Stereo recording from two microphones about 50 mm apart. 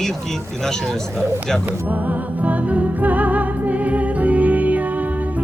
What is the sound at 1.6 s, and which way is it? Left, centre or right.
Music, right.